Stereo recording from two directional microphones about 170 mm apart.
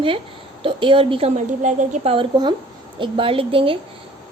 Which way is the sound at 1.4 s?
45° right (ahead or behind).